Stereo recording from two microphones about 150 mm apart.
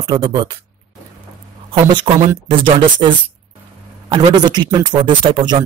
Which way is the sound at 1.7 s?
30° right (ahead or behind).